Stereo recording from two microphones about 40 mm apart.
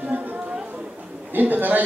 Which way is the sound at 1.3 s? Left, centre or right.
Right.